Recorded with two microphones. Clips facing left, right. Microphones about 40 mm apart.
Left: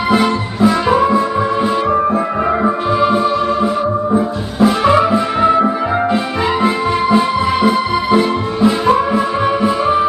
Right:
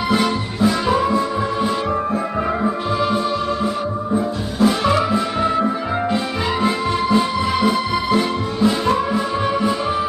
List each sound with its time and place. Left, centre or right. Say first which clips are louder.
0.1 s music: left 6 dB; centre